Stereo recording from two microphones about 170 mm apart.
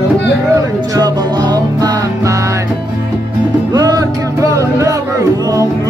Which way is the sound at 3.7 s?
20° right (ahead or behind).